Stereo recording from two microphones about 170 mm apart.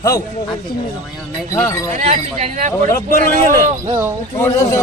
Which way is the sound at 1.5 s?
15° left (ahead or behind).